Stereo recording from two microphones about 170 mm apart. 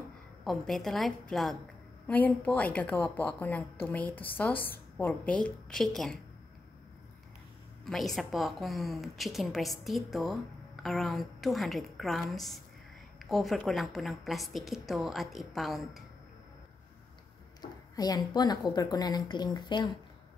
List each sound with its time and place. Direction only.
0.4 s a woman's voice: centre (ahead or behind)
7.8 s a woman's voice: centre (ahead or behind)
17.6 s speech: 20° left (ahead or behind)